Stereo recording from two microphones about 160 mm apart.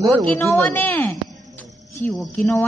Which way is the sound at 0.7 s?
10° left (ahead or behind).